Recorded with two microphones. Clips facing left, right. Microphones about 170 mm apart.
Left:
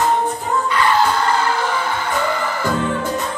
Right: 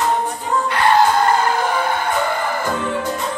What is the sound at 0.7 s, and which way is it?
Music, 60° right (ahead or behind).